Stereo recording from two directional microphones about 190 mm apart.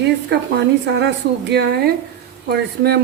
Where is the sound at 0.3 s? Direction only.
65° right (ahead or behind).